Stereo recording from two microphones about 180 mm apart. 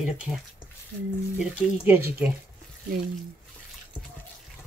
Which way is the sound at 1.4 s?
10° right (ahead or behind).